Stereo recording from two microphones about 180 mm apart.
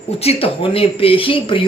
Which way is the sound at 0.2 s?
35° left (ahead or behind).